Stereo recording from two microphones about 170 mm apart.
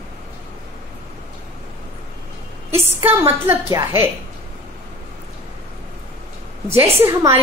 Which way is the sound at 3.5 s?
15° right (ahead or behind).